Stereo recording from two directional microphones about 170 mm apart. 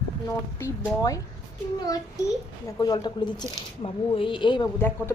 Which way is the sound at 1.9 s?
20° left (ahead or behind).